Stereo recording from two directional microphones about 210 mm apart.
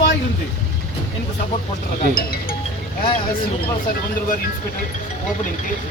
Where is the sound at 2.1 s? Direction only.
45° left (ahead or behind).